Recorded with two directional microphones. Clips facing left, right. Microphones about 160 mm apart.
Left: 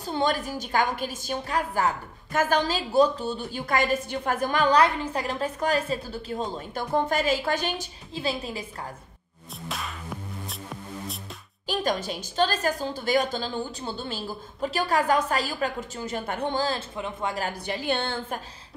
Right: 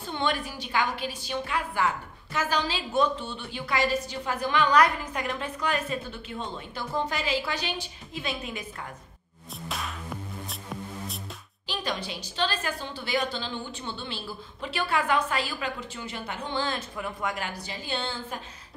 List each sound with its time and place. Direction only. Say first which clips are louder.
0.0 s a woman's voice: left 3 dB; 40° left (ahead or behind)
2.9 s a woman's voice: left 5 dB; 40° left (ahead or behind)
8.1 s a woman's voice: left 4 dB; 35° left (ahead or behind)
9.7 s music: even; centre (ahead or behind)
11.6 s a woman's voice: left 6 dB; 45° left (ahead or behind); by 17.5 s 30° left (ahead or behind)
17.6 s a woman's voice: left 8 dB; 60° left (ahead or behind)